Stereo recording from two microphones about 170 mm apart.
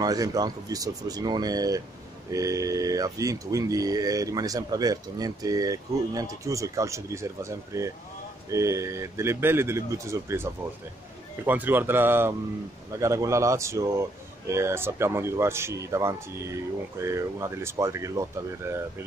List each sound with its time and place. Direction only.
0.0 s speech: 20° right (ahead or behind)